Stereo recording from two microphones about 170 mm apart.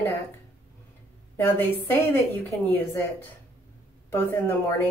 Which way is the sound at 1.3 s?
15° left (ahead or behind).